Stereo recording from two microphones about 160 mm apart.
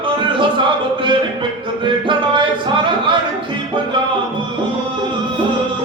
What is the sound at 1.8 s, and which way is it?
Music, 30° right (ahead or behind).